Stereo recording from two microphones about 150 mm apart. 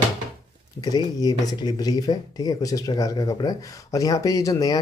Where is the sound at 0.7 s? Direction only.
25° left (ahead or behind).